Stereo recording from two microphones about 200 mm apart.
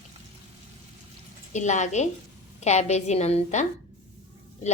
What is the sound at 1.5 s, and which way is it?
A woman's voice, 35° left (ahead or behind).